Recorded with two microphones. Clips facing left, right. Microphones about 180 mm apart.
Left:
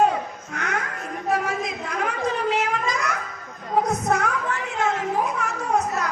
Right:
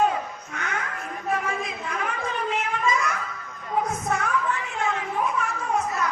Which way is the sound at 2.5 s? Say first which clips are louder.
Left 2 dB; 80° left.